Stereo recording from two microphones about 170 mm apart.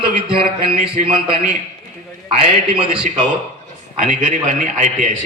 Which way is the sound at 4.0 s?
50° right (ahead or behind).